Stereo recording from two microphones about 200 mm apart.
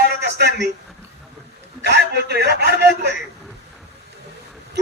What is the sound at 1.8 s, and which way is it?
A man's voice, 55° right (ahead or behind).